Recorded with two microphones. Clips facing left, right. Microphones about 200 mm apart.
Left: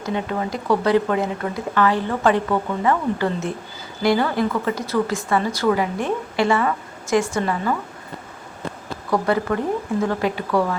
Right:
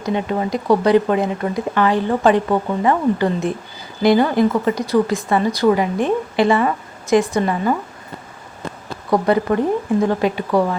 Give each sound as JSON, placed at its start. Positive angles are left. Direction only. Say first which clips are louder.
{"t": 0.0, "sound": "a woman's voice", "louder": "right 4 dB", "side_deg": -20}
{"t": 9.0, "sound": "a woman's voice", "louder": "right 4 dB", "side_deg": -25}